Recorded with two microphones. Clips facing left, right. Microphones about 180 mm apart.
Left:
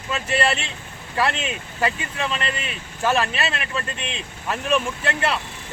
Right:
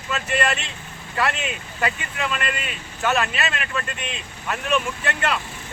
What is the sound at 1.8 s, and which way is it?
Speech, 30° left (ahead or behind).